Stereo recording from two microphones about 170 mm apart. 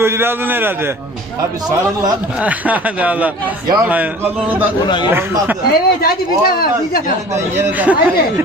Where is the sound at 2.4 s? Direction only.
10° right (ahead or behind).